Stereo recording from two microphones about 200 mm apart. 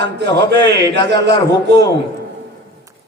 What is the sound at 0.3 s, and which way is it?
A man's voice, 55° right (ahead or behind).